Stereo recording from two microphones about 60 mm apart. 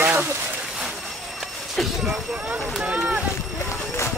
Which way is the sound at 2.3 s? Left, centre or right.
Right.